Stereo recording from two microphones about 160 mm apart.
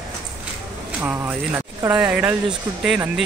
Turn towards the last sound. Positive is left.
turn(degrees=-5)  # may be behind; listen again after turning